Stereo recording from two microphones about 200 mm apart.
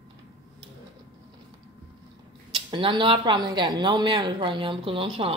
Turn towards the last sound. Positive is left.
turn(degrees=-25)  # may be behind; listen again after turning